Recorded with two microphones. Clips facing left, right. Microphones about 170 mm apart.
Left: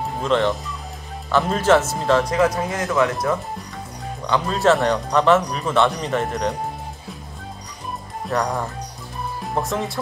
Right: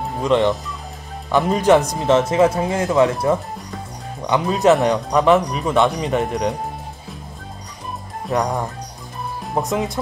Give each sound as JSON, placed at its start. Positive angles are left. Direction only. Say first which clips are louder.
{"t": 0.2, "sound": "speech", "louder": "right 3 dB", "side_deg": -15}
{"t": 1.5, "sound": "speech", "louder": "right 3 dB", "side_deg": -15}
{"t": 4.8, "sound": "speech", "louder": "right 2 dB", "side_deg": -5}
{"t": 8.3, "sound": "speech", "louder": "right 2 dB", "side_deg": -15}